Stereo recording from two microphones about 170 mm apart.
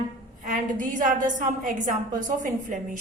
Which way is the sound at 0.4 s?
50° right (ahead or behind).